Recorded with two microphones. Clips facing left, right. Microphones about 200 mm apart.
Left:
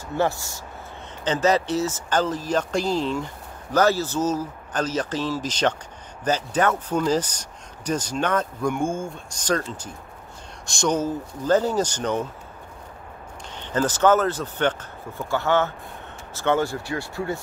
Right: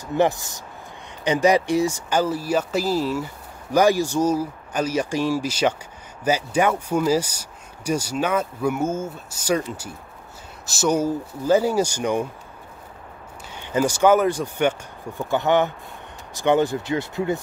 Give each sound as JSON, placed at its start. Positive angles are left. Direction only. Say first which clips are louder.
{"t": 0.1, "sound": "speech", "louder": "right 4 dB", "side_deg": -15}
{"t": 13.6, "sound": "speech", "louder": "right 2 dB", "side_deg": -10}